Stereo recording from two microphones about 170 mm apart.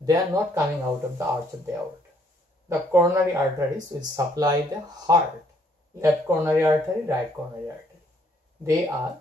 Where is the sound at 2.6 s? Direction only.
15° right (ahead or behind).